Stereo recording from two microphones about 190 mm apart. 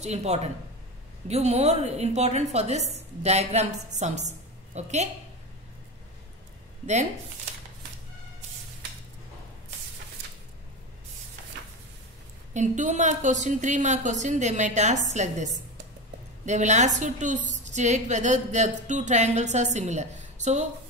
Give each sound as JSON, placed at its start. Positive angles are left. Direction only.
{"t": 0.0, "sound": "a woman's voice", "side_deg": -35}
{"t": 12.5, "sound": "a woman's voice", "side_deg": -40}